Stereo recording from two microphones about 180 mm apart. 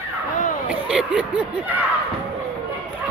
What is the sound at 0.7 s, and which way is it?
Speech, 5° right (ahead or behind).